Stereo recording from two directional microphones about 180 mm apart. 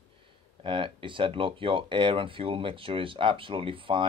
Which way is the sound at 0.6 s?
30° right (ahead or behind).